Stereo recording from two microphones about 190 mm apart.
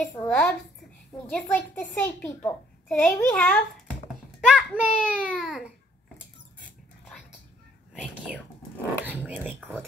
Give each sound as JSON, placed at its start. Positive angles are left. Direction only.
{"t": 0.0, "sound": "a child's voice", "side_deg": 10}
{"t": 4.5, "sound": "a child's voice", "side_deg": -5}
{"t": 7.9, "sound": "whispering", "side_deg": 0}
{"t": 9.0, "sound": "speech", "side_deg": -10}